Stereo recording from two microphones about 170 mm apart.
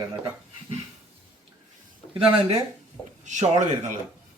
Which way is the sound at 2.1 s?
35° right (ahead or behind).